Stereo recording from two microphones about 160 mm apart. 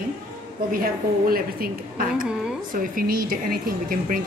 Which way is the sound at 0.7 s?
65° right (ahead or behind).